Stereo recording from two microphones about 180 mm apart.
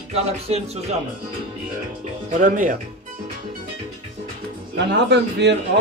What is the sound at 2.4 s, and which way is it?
Speech, 45° right (ahead or behind).